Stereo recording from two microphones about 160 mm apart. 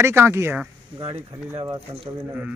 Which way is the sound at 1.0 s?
35° right (ahead or behind).